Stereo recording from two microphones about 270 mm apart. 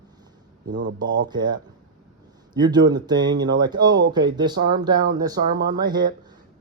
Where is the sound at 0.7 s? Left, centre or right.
Right.